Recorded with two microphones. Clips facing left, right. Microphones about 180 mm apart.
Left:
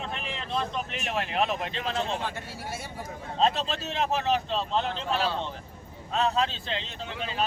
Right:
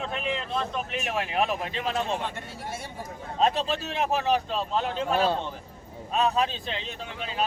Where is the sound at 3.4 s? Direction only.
15° right (ahead or behind).